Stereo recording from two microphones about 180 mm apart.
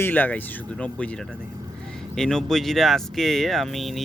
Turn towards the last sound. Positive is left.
turn(degrees=0)  # may be behind; listen again after turning